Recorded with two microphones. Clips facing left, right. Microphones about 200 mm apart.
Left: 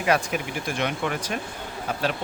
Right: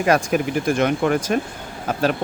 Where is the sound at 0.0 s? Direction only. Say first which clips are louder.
Right 6 dB; 45° right (ahead or behind).